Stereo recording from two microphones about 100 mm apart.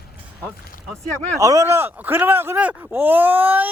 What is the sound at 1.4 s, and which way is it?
Baby cry, 35° right (ahead or behind).